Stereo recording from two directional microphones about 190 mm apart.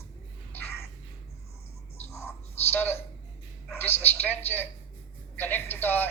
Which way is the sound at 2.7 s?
10° left (ahead or behind).